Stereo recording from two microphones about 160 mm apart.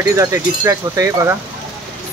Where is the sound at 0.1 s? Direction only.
20° right (ahead or behind).